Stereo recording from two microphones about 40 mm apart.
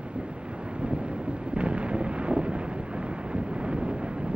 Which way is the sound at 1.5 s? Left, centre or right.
Right.